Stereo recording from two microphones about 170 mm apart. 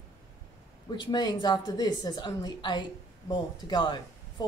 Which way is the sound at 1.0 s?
25° left (ahead or behind).